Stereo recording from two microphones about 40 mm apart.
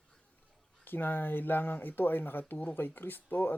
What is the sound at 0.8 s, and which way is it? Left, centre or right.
Speech, left.